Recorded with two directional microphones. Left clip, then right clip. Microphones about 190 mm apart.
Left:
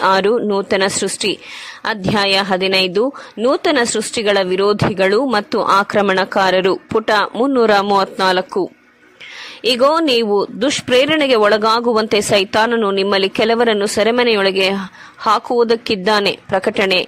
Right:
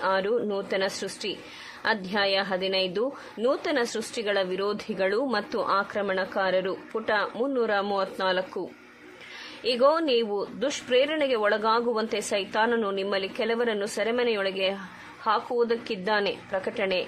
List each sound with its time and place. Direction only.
0.0 s a woman's voice: 40° left (ahead or behind)